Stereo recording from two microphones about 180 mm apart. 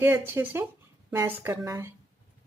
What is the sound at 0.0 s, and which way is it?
Speech, 10° right (ahead or behind).